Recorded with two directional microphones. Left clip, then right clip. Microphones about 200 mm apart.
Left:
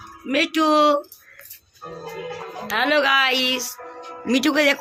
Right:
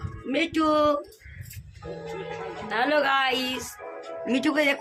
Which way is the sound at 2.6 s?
25° left (ahead or behind).